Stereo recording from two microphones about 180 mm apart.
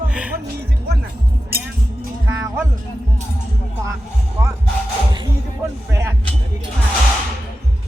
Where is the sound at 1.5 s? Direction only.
55° right (ahead or behind).